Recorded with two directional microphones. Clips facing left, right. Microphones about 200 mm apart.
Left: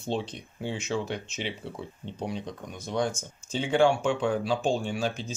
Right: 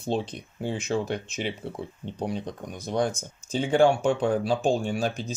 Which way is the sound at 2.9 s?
35° right (ahead or behind).